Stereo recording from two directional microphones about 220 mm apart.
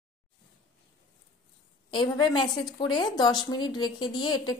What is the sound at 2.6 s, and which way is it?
A woman's voice, 20° left (ahead or behind).